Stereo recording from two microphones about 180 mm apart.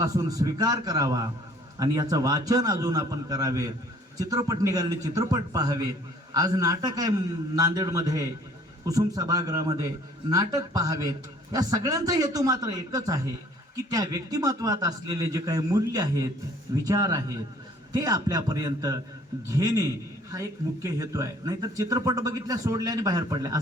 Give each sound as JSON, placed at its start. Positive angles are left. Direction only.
{"t": 0.0, "sound": "speech", "side_deg": -20}